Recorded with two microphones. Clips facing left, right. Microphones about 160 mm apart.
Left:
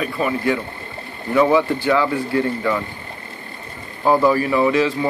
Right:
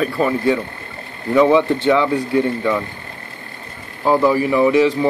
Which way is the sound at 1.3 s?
20° right (ahead or behind).